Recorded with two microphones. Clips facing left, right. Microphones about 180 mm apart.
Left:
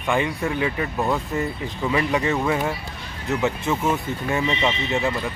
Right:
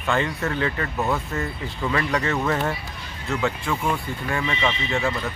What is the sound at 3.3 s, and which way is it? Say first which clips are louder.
Speech: left 2 dB; 20° left (ahead or behind).